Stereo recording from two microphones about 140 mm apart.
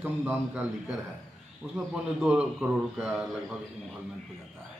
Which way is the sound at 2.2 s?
5° right (ahead or behind).